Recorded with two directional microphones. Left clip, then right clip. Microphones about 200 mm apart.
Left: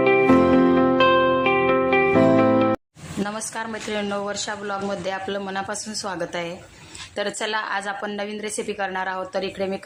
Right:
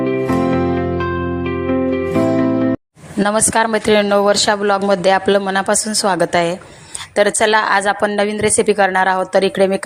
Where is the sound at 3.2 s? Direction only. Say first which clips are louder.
Right 16 dB; 40° right (ahead or behind).